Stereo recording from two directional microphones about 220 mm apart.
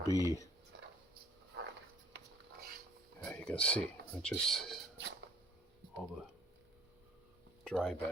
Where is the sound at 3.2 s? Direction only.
5° left (ahead or behind).